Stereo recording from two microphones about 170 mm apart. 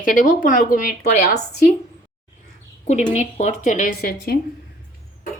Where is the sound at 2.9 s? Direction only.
45° left (ahead or behind); by 4.4 s 65° left (ahead or behind).